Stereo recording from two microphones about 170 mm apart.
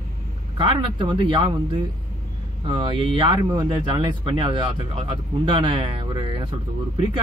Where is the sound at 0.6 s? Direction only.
30° right (ahead or behind).